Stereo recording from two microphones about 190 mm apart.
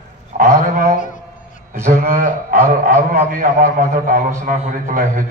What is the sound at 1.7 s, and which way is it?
Speech, 15° right (ahead or behind).